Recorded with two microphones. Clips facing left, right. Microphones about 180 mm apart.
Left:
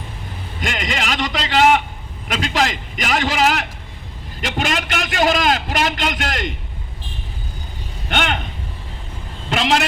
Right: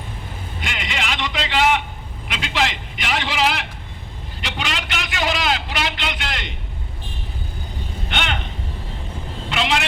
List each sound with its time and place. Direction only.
0.6 s a sound: 45° left (ahead or behind)
2.2 s a man's voice: 45° left (ahead or behind)
8.1 s speech: 50° left (ahead or behind)
9.5 s a woman's voice: 45° left (ahead or behind)